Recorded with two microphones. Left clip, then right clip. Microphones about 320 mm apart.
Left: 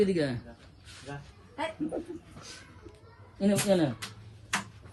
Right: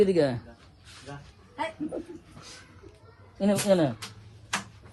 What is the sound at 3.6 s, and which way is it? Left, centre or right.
Speech, right.